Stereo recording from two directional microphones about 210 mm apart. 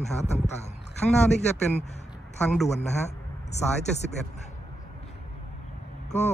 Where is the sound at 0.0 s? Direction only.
30° left (ahead or behind).